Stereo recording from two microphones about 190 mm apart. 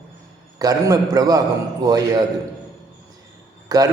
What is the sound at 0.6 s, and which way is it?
Speech, 20° right (ahead or behind).